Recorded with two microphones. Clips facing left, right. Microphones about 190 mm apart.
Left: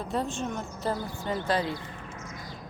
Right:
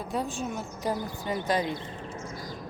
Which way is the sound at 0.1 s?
5° right (ahead or behind).